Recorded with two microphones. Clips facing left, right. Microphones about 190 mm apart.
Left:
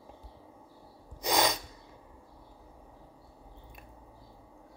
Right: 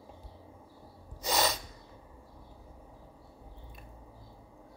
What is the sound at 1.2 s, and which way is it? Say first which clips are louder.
Sneeze: left 2 dB; 15° left (ahead or behind).